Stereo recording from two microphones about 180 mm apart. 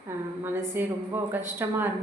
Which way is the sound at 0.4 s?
10° right (ahead or behind).